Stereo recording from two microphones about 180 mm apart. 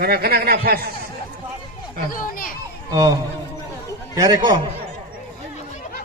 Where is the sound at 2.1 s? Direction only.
50° left (ahead or behind).